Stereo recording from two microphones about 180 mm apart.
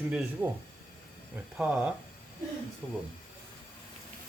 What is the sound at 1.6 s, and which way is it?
Speech, 5° right (ahead or behind).